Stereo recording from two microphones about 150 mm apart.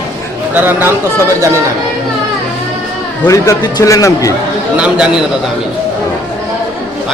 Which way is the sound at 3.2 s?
20° left (ahead or behind).